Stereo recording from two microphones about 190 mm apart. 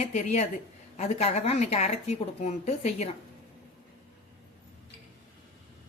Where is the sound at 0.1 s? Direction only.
35° left (ahead or behind).